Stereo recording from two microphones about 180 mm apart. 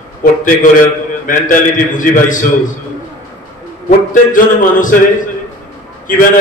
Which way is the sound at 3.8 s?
45° left (ahead or behind).